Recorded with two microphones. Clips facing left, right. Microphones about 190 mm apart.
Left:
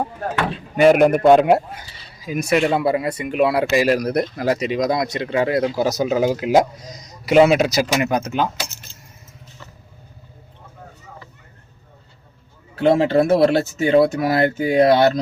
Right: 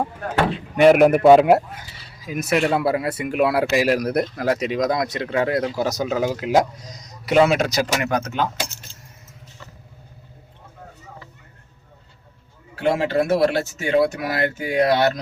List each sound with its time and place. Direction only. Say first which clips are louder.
0.8 s speech: even; centre (ahead or behind)
12.8 s speech: left 5 dB; 25° left (ahead or behind)